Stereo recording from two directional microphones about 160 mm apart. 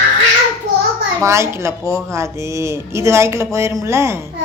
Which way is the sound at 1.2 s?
15° right (ahead or behind).